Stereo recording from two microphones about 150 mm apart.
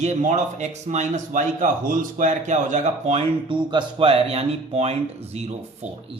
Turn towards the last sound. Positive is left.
turn(degrees=-45)  # may be behind; listen again after turning